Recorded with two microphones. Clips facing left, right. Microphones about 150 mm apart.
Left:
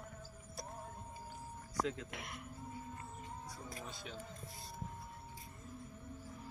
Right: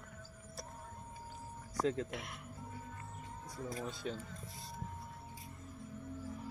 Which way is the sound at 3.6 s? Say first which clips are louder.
Right 11 dB; 35° right (ahead or behind).